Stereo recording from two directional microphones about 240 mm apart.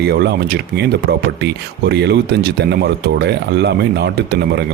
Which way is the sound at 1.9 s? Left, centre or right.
Right.